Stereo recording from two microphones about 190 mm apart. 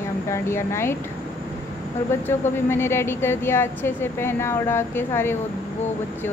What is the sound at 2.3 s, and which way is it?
A woman's voice, 10° left (ahead or behind).